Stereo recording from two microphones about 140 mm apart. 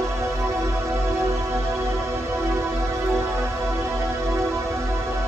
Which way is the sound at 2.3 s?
20° right (ahead or behind).